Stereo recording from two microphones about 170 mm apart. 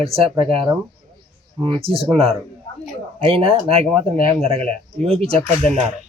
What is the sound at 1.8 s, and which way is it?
Speech, 35° right (ahead or behind).